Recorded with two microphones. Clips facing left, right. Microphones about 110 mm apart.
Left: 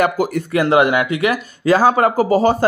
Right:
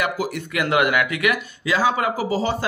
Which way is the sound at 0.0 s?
50° left (ahead or behind).